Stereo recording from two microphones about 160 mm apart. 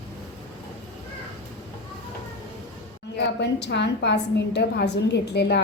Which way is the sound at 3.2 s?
90° left.